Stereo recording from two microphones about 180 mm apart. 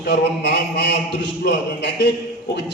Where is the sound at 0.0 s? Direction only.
70° left (ahead or behind).